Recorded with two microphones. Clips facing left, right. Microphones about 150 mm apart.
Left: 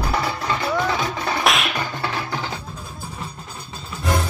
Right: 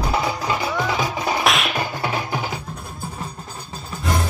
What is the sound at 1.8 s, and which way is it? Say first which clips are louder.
Music: right 2 dB; 15° right (ahead or behind).